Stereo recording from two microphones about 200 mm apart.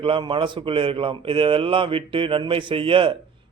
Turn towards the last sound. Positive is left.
turn(degrees=-25)  # may be behind; listen again after turning